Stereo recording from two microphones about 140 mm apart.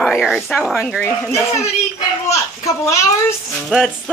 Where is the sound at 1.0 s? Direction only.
20° left (ahead or behind).